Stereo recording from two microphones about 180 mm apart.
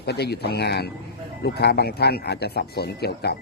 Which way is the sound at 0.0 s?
65° left (ahead or behind).